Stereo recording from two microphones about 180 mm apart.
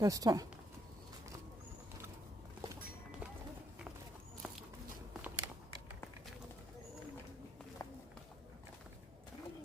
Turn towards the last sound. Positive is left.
turn(degrees=20)  # may be behind; listen again after turning